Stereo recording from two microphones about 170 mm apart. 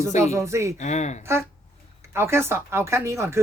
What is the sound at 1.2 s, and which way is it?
Speech, 15° right (ahead or behind).